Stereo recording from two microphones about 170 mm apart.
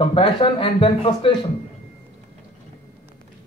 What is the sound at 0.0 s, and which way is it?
Speech, 30° left (ahead or behind).